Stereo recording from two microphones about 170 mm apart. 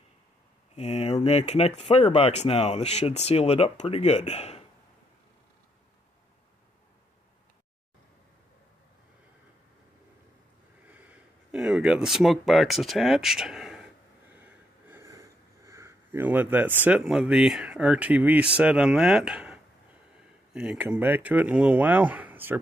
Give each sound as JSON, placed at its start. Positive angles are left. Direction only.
{"t": 0.7, "sound": "speech", "side_deg": 40}
{"t": 10.9, "sound": "speech", "side_deg": -10}
{"t": 14.3, "sound": "a sound", "side_deg": -10}
{"t": 16.8, "sound": "speech", "side_deg": -5}